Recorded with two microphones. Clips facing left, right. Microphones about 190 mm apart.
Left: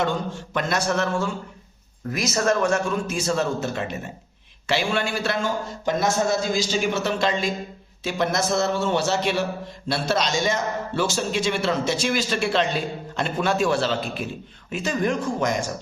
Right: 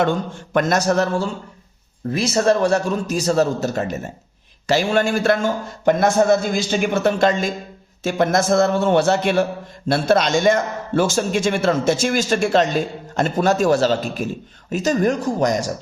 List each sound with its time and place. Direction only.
0.5 s a man's voice: 40° right (ahead or behind)